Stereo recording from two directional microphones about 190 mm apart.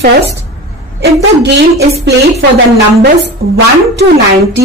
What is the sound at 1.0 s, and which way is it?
A woman's voice, 60° right (ahead or behind).